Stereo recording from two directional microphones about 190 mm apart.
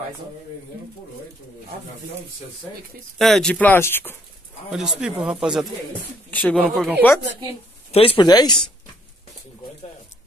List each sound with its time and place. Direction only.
3.2 s speech: centre (ahead or behind)
4.6 s speech: centre (ahead or behind)
6.3 s speech: 10° left (ahead or behind)
7.9 s speech: 30° left (ahead or behind)